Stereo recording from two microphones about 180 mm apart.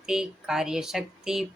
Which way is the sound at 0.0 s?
5° right (ahead or behind).